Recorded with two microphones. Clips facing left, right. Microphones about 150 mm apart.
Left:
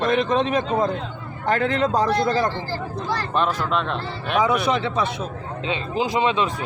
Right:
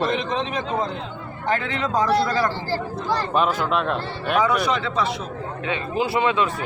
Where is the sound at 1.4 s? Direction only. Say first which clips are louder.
Left 4 dB; 45° left (ahead or behind).